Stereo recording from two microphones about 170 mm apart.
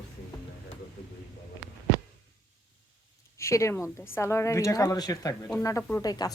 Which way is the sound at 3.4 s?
15° left (ahead or behind).